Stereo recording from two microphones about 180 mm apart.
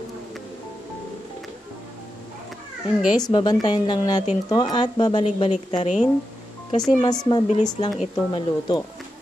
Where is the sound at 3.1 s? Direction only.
20° left (ahead or behind).